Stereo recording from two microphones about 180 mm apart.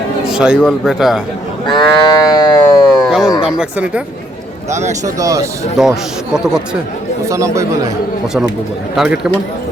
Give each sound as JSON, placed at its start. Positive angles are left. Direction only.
{"t": 0.3, "sound": "a man's voice", "side_deg": -5}
{"t": 1.6, "sound": "livestock", "side_deg": 25}
{"t": 3.1, "sound": "speech", "side_deg": 0}
{"t": 4.7, "sound": "speech", "side_deg": -40}
{"t": 5.0, "sound": "speech", "side_deg": -20}
{"t": 5.7, "sound": "speech", "side_deg": 0}
{"t": 7.3, "sound": "speech", "side_deg": -15}
{"t": 9.0, "sound": "speech", "side_deg": -5}